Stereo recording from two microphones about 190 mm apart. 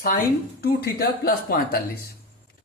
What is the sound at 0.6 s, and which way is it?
Speech, 55° left (ahead or behind).